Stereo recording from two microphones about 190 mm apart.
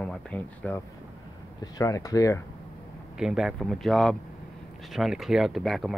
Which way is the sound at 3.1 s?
Centre (ahead or behind).